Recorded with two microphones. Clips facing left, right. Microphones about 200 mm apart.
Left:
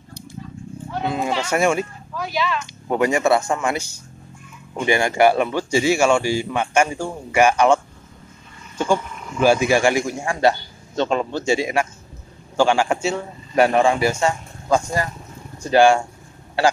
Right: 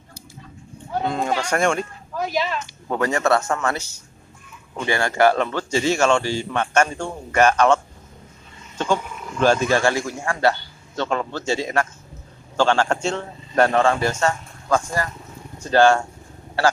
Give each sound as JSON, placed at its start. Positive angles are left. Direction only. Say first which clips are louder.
{"t": 1.0, "sound": "speech", "louder": "left 1 dB", "side_deg": 5}
{"t": 2.1, "sound": "speech", "louder": "even", "side_deg": -40}
{"t": 2.9, "sound": "speech", "louder": "left 2 dB", "side_deg": 15}